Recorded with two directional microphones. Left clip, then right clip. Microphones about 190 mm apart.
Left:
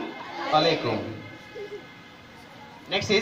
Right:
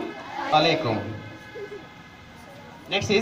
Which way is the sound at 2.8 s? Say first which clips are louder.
Right 1 dB; 25° left (ahead or behind).